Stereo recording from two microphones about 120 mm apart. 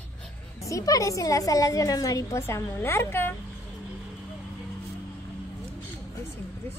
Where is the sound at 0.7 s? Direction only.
30° left (ahead or behind).